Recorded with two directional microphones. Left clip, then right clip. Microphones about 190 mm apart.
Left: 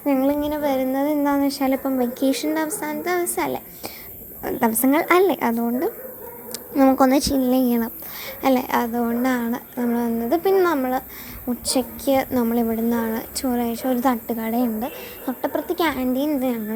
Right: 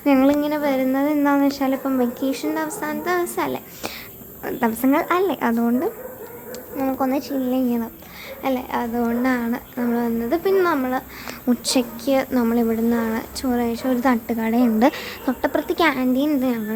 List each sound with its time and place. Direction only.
0.0 s a sound: 10° right (ahead or behind)
0.4 s a sound: 5° left (ahead or behind)
2.2 s a woman's voice: 20° left (ahead or behind)
6.7 s a woman's voice: 35° left (ahead or behind)
8.4 s a woman's voice: 30° left (ahead or behind)
9.0 s a woman's voice: 15° left (ahead or behind)
11.6 s a woman's voice: centre (ahead or behind)